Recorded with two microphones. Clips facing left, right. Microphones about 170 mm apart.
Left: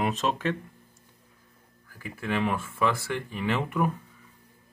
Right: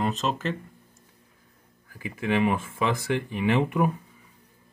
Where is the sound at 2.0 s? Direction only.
15° right (ahead or behind).